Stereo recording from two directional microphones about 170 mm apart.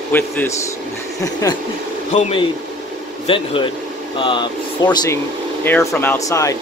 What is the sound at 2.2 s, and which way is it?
Speech, 35° left (ahead or behind).